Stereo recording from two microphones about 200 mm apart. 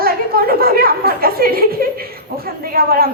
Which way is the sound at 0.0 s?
50° right (ahead or behind).